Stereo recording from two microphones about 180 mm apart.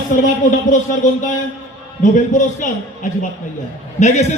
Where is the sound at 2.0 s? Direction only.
45° left (ahead or behind).